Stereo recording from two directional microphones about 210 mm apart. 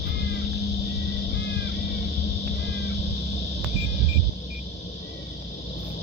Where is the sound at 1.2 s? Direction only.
55° left (ahead or behind).